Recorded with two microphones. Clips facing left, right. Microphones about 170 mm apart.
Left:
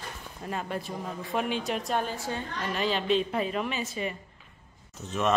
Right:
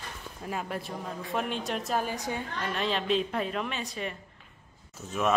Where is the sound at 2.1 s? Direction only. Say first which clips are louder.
Even; 15° right (ahead or behind).